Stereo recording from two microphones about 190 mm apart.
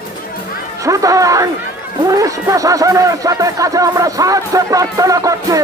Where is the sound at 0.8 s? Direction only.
15° right (ahead or behind).